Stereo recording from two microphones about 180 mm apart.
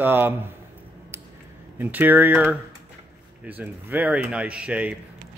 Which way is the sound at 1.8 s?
10° right (ahead or behind).